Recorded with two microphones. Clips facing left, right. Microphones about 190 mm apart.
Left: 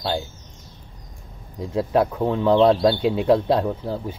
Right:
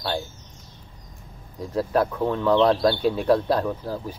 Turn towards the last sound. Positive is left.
turn(degrees=25)  # may be behind; listen again after turning